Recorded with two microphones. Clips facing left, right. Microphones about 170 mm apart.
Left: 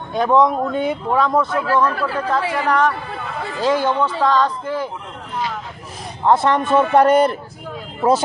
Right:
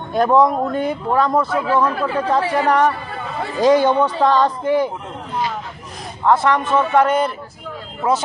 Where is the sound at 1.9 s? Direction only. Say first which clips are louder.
Right 2 dB; 15° right (ahead or behind).